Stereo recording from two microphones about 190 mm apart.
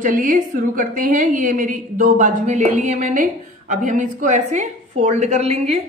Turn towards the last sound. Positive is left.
turn(degrees=-35)  # may be behind; listen again after turning